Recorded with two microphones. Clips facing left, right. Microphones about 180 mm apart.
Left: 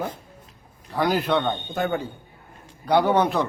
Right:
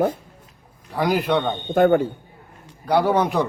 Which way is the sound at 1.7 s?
55° right (ahead or behind).